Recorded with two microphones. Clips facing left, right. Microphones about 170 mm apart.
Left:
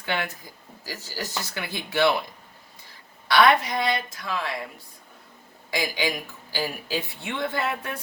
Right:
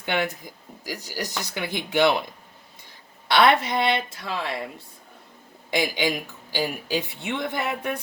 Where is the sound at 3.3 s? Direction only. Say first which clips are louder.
Even; 25° right (ahead or behind).